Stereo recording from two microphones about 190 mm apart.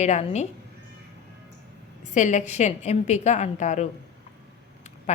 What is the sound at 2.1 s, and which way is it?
A woman's voice, 40° left (ahead or behind).